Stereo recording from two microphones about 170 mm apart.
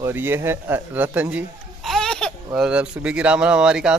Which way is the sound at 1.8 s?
Centre (ahead or behind).